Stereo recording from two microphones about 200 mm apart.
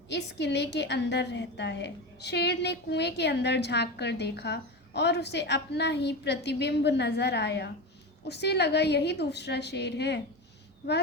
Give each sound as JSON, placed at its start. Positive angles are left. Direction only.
{"t": 0.1, "sound": "a woman's voice", "side_deg": 60}